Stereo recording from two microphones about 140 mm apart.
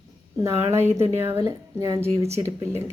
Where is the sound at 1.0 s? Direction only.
20° right (ahead or behind).